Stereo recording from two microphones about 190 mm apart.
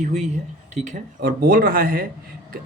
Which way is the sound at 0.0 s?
35° right (ahead or behind).